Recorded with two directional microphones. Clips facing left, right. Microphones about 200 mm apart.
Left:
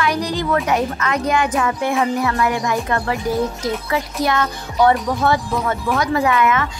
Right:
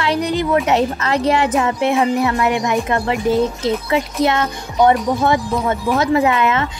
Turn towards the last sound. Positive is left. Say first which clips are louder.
# right 1 dB
turn(degrees=-25)  # may be behind; listen again after turning